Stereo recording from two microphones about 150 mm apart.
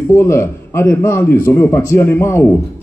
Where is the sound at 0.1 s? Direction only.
15° left (ahead or behind).